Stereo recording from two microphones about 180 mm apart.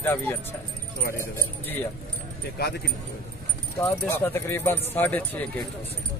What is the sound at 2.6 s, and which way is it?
Speech, 60° left (ahead or behind).